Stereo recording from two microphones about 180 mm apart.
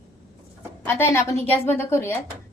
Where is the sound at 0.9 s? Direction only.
10° left (ahead or behind).